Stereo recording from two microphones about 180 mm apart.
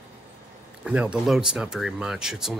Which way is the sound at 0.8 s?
5° right (ahead or behind).